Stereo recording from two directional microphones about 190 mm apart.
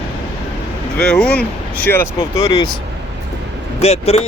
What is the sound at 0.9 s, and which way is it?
Speech, 5° left (ahead or behind).